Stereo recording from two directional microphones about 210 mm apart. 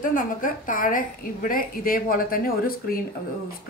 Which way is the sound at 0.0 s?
40° left (ahead or behind).